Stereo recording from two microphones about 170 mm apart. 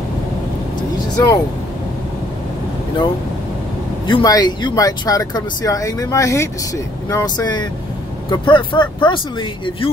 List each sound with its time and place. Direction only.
0.9 s vehicle: 20° left (ahead or behind)
4.1 s speech: 25° left (ahead or behind)